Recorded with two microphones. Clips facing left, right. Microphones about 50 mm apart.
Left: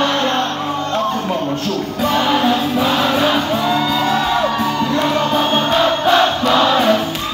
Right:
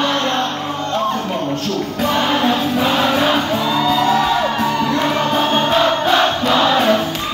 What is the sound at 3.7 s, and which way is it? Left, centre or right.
Music, left.